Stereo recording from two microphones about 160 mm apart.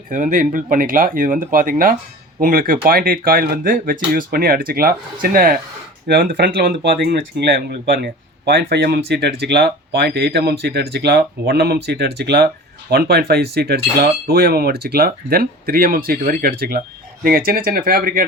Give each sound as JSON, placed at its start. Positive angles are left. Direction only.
{"t": 0.1, "sound": "speech", "side_deg": -55}
{"t": 12.9, "sound": "speech", "side_deg": -80}